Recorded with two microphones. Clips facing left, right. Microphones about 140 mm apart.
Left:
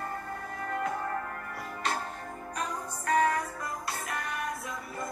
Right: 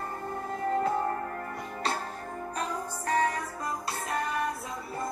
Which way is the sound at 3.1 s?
30° right (ahead or behind).